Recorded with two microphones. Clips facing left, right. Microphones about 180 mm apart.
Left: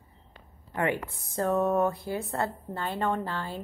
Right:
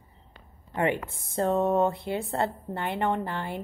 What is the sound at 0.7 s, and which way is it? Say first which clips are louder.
Speech: right 2 dB; 20° right (ahead or behind).